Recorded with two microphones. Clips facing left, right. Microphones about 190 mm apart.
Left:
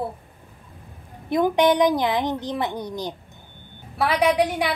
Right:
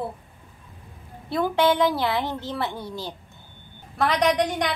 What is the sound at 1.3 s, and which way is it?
A woman's voice, 15° left (ahead or behind).